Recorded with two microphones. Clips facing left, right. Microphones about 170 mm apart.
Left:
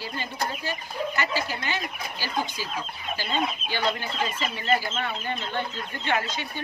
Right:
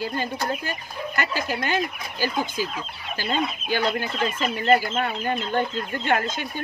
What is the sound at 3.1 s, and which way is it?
Fowl, 50° right (ahead or behind).